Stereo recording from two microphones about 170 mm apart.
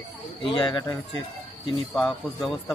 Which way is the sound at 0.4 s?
30° left (ahead or behind).